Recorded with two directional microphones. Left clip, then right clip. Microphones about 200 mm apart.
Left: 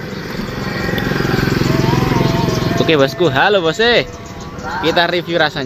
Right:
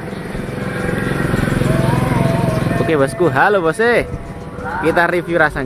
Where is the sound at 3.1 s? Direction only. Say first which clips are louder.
Left 1 dB; centre (ahead or behind).